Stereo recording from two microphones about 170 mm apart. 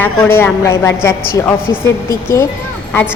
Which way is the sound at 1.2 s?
60° left (ahead or behind).